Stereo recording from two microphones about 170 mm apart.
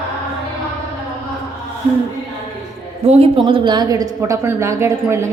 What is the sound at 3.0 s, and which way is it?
A woman's voice, 35° right (ahead or behind).